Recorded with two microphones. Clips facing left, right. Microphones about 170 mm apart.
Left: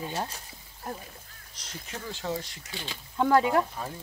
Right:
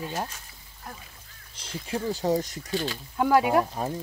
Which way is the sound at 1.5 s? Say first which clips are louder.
Right 9 dB; 30° right (ahead or behind).